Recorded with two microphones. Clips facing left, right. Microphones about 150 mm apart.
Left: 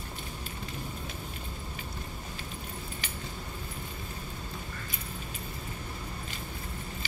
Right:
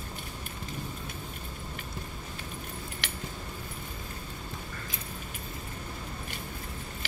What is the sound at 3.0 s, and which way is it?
Keys jangling, 80° right.